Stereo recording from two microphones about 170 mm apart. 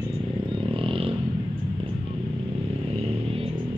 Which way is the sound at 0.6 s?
30° right (ahead or behind).